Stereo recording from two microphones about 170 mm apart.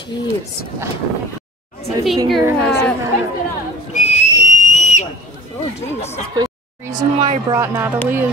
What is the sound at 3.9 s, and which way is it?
Whistle, 45° left (ahead or behind).